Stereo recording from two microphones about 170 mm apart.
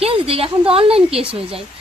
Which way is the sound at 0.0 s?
35° right (ahead or behind).